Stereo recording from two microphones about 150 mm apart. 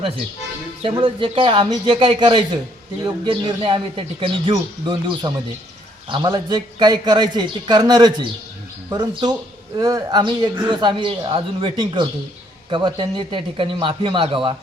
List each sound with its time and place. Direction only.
0.8 s a man's voice: 35° right (ahead or behind)